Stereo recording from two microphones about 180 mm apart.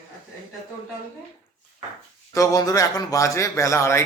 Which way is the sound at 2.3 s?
20° left (ahead or behind).